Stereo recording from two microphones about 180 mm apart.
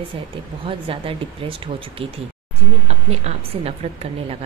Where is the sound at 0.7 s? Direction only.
30° right (ahead or behind).